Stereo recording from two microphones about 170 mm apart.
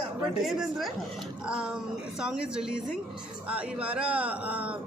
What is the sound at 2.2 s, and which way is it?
A man's voice, 5° right (ahead or behind).